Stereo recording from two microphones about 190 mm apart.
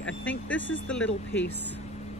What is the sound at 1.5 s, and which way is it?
Vehicle, 35° left (ahead or behind).